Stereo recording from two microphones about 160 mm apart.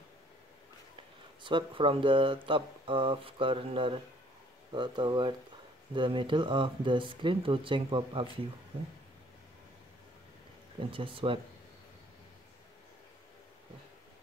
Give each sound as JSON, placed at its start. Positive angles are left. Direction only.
{"t": 1.4, "sound": "speech", "side_deg": -30}
{"t": 10.8, "sound": "speech", "side_deg": -30}